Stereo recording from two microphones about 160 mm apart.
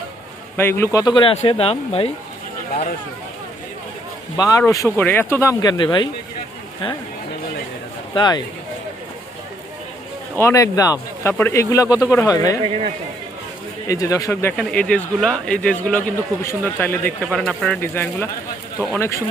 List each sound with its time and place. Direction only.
0.5 s speech: 15° left (ahead or behind)
0.9 s speech: 30° left (ahead or behind)
4.4 s speech: 20° left (ahead or behind)
8.1 s speech: 30° left (ahead or behind)
10.3 s speech: 20° left (ahead or behind)
12.6 s speech: 40° right (ahead or behind)
13.8 s speech: 20° left (ahead or behind)
14.5 s speech: 5° left (ahead or behind)
17.7 s speech: 15° left (ahead or behind)